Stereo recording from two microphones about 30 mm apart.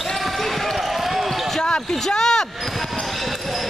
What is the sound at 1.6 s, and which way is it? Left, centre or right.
Speech, left.